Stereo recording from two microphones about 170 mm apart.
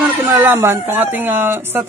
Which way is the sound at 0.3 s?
15° right (ahead or behind).